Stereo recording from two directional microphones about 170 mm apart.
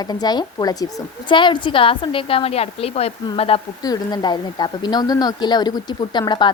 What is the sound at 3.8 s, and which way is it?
Speech, 20° left (ahead or behind).